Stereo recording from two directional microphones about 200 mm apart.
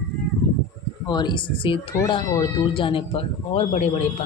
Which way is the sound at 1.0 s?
20° left (ahead or behind).